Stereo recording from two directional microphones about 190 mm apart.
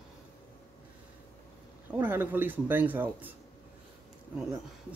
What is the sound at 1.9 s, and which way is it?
Speech, 10° right (ahead or behind).